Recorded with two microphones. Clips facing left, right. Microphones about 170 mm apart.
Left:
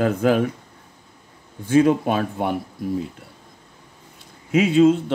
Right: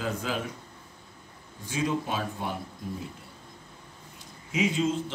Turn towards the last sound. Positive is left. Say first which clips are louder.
# left 12 dB
turn(degrees=60)  # may be behind; listen again after turning